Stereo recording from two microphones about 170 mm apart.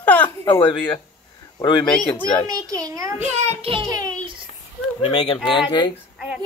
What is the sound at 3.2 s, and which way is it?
Speech, 40° right (ahead or behind).